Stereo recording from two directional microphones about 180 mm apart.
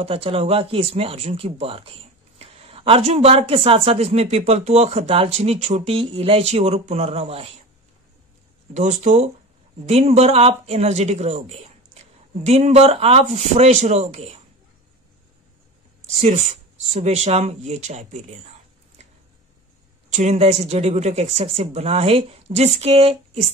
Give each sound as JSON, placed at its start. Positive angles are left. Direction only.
{"t": 0.0, "sound": "speech", "side_deg": -35}
{"t": 8.7, "sound": "speech", "side_deg": -40}
{"t": 16.1, "sound": "speech", "side_deg": -40}
{"t": 20.1, "sound": "speech", "side_deg": -40}